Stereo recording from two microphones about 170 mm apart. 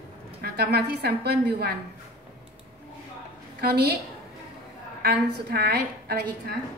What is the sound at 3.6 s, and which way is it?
Speech, 70° right (ahead or behind).